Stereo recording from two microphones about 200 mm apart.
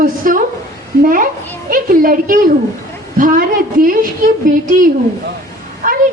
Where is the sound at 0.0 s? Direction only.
40° right (ahead or behind).